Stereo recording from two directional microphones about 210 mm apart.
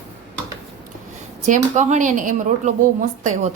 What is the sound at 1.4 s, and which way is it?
A woman's voice, 35° right (ahead or behind).